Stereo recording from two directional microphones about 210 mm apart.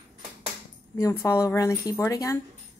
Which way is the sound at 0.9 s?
15° left (ahead or behind).